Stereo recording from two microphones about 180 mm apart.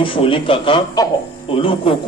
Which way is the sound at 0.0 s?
30° left (ahead or behind).